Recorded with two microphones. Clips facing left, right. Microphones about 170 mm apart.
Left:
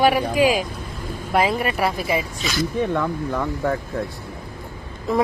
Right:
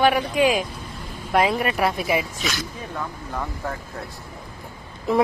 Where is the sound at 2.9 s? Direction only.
80° left.